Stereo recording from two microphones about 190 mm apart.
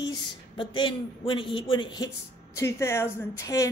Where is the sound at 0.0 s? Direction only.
25° left (ahead or behind).